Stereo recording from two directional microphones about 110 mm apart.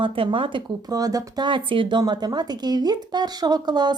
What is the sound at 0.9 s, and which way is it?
Speech, 35° right (ahead or behind).